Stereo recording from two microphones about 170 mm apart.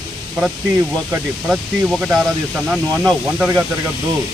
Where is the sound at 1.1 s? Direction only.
5° right (ahead or behind).